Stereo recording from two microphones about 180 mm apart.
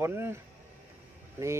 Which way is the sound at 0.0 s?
15° right (ahead or behind).